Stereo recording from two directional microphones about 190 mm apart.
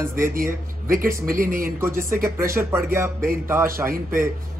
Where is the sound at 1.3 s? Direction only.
50° right (ahead or behind).